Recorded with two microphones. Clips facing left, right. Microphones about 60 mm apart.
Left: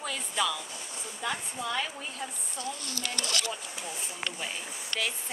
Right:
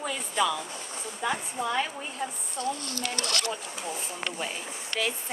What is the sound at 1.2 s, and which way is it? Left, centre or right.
Speech, centre.